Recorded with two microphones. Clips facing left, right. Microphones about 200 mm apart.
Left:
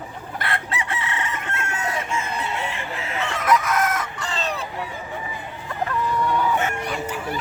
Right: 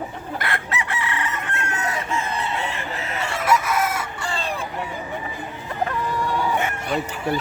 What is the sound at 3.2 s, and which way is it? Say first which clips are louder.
Chicken: even; 10° right (ahead or behind).